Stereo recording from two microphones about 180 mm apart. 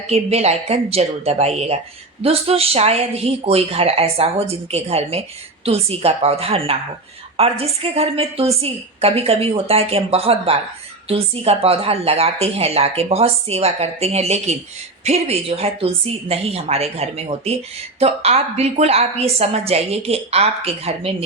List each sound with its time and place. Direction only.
0.1 s speech: 35° right (ahead or behind)